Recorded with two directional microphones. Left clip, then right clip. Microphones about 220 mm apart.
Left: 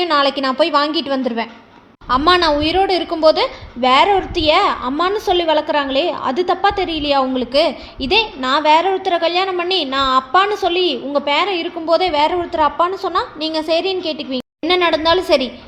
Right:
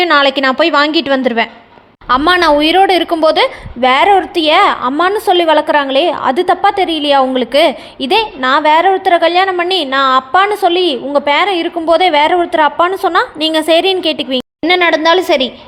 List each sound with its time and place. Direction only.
0.0 s a woman's voice: 25° right (ahead or behind)